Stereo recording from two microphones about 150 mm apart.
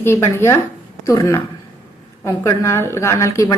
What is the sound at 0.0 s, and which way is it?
A woman's voice, 15° left (ahead or behind).